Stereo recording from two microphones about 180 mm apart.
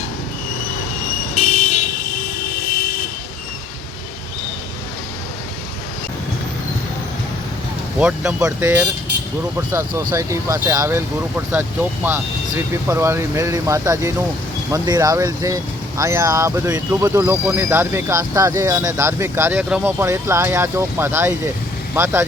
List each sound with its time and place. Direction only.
1.4 s vehicle: 40° left (ahead or behind)
7.9 s speech: 5° right (ahead or behind)